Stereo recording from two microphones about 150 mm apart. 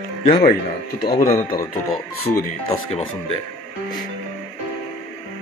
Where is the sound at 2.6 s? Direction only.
40° left (ahead or behind).